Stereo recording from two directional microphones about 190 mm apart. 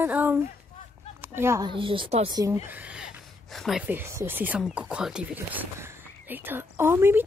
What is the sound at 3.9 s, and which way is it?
Speech, 15° right (ahead or behind).